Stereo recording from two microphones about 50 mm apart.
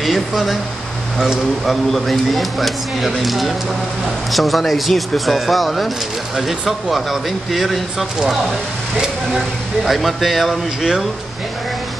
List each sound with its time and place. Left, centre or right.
0.0 s speech: centre
1.7 s speech: centre
8.9 s speech: centre
9.8 s speech: centre